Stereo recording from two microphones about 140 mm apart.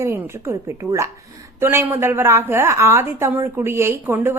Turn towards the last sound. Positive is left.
turn(degrees=-15)  # may be behind; listen again after turning